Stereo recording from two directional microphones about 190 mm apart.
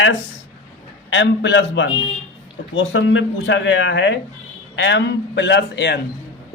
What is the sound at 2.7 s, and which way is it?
Speech, 90° left.